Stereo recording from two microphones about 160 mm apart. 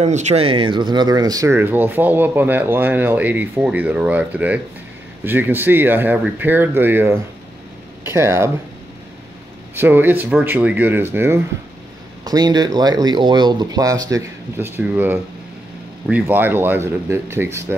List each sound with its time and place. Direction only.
0.0 s speech: 45° right (ahead or behind); by 8.5 s 15° right (ahead or behind)
9.8 s speech: 10° right (ahead or behind)
12.3 s speech: 25° right (ahead or behind)